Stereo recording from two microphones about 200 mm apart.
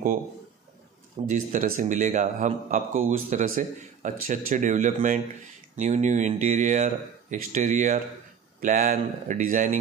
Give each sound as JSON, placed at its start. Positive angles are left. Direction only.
{"t": 1.3, "sound": "speech", "side_deg": -40}